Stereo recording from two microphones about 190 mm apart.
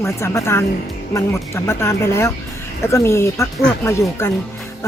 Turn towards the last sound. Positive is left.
turn(degrees=15)  # may be behind; listen again after turning